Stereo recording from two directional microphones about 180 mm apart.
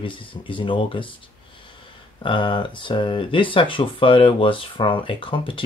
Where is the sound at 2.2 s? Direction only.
25° left (ahead or behind).